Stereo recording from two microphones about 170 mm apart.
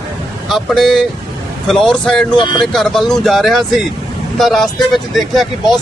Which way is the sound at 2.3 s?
25° left (ahead or behind).